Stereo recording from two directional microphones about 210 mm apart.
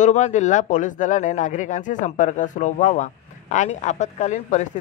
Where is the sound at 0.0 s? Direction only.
35° left (ahead or behind).